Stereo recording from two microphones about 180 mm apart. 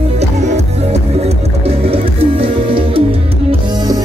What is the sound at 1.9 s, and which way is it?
Music, 30° right (ahead or behind).